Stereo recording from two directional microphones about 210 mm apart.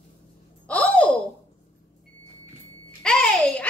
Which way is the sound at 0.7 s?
5° left (ahead or behind).